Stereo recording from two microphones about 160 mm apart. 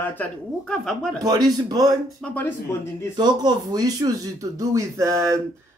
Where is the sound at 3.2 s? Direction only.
25° right (ahead or behind).